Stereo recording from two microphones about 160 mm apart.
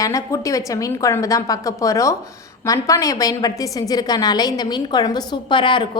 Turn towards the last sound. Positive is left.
turn(degrees=30)  # may be behind; listen again after turning